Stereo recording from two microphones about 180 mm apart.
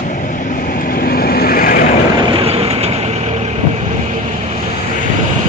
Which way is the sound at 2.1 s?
30° right (ahead or behind).